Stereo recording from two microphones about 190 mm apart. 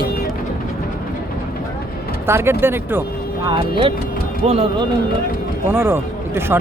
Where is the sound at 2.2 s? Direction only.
15° right (ahead or behind).